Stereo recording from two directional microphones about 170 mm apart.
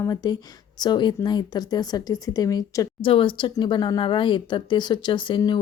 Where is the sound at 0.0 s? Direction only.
20° left (ahead or behind).